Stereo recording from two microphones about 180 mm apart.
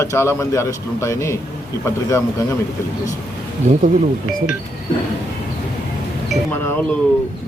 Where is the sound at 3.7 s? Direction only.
40° right (ahead or behind).